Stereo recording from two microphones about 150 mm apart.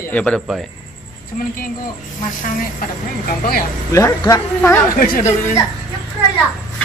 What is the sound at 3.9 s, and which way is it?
Speech, 20° left (ahead or behind).